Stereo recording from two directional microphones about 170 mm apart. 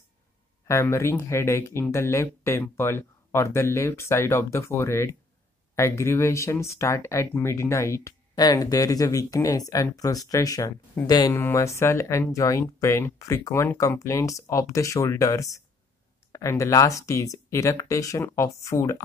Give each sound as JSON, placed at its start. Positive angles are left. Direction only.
{"t": 0.7, "sound": "speech", "side_deg": 15}